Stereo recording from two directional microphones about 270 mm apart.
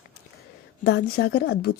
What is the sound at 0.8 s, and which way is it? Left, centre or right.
Speech, left.